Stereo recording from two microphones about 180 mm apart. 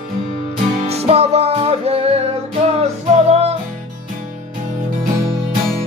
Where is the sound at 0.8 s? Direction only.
35° right (ahead or behind).